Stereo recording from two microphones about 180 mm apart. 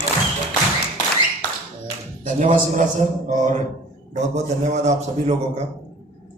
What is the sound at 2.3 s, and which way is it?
Speech, 45° right (ahead or behind).